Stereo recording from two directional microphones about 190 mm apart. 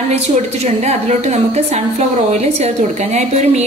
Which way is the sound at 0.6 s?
35° right (ahead or behind).